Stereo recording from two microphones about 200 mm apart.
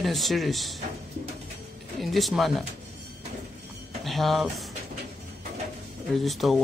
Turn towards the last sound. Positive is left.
turn(degrees=0)  # may be behind; listen again after turning